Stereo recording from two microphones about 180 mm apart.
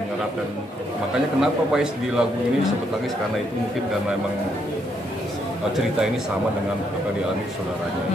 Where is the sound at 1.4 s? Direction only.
5° right (ahead or behind).